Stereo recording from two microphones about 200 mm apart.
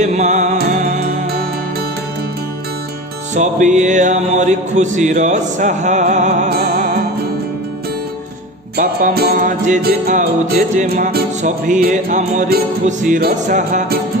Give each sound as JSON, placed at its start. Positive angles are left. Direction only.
{"t": 0.0, "sound": "music", "side_deg": -35}
{"t": 3.3, "sound": "music", "side_deg": -35}
{"t": 6.5, "sound": "music", "side_deg": -50}
{"t": 8.7, "sound": "music", "side_deg": -45}